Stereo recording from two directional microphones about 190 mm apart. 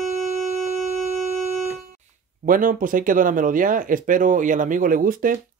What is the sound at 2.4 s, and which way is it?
Speech, 45° right (ahead or behind).